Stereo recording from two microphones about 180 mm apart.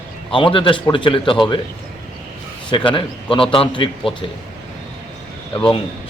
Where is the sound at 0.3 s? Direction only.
30° left (ahead or behind).